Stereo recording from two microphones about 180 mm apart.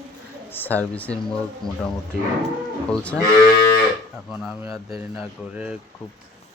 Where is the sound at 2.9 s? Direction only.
5° left (ahead or behind).